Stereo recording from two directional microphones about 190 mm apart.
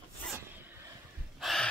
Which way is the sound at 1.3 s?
Centre (ahead or behind).